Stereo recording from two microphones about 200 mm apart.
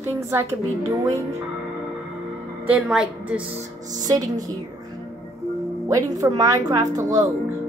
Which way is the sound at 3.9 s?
20° right (ahead or behind).